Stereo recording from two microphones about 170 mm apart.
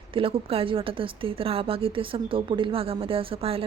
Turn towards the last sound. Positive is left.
turn(degrees=-35)  # may be behind; listen again after turning